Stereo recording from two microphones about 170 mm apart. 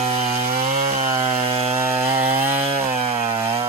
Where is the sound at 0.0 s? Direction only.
40° right (ahead or behind).